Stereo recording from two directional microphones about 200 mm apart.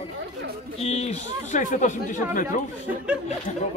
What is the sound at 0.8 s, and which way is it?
Speech, 35° left (ahead or behind).